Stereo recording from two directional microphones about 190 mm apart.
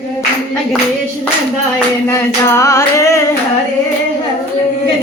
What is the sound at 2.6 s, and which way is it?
Music, 15° left (ahead or behind).